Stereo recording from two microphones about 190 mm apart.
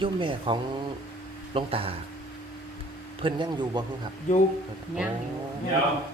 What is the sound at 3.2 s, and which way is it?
Speech, 25° right (ahead or behind).